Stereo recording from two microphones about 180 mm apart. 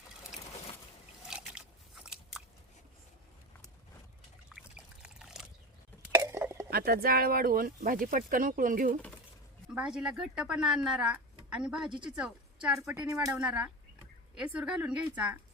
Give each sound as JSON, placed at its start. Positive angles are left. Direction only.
{"t": 1.3, "sound": "boat", "side_deg": -5}
{"t": 4.5, "sound": "pour", "side_deg": -5}
{"t": 5.0, "sound": "a sound", "side_deg": -5}
{"t": 6.0, "sound": "a sound", "side_deg": -15}
{"t": 6.7, "sound": "speech", "side_deg": -55}
{"t": 9.6, "sound": "a woman's voice", "side_deg": -5}